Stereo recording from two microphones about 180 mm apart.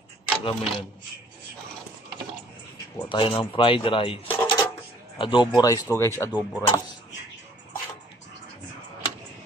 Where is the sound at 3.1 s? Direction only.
30° left (ahead or behind).